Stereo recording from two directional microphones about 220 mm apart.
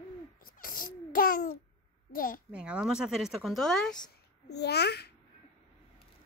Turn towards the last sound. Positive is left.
turn(degrees=50)  # may be behind; listen again after turning